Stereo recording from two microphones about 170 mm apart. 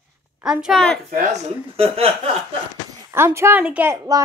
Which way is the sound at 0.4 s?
5° right (ahead or behind).